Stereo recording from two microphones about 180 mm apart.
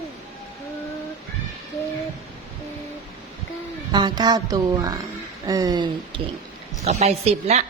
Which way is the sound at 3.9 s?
25° right (ahead or behind).